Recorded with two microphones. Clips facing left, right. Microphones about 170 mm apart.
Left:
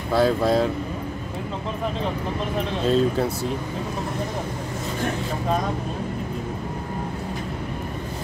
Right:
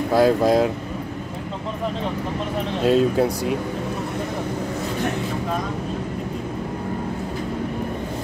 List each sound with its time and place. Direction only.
0.1 s speech: 10° right (ahead or behind)
2.8 s speech: 10° right (ahead or behind)